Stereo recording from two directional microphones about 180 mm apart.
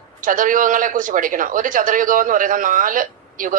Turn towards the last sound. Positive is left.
turn(degrees=-50)  # may be behind; listen again after turning